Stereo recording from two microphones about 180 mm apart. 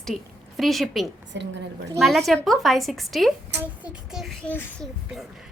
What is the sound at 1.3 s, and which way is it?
Speech, 75° right (ahead or behind).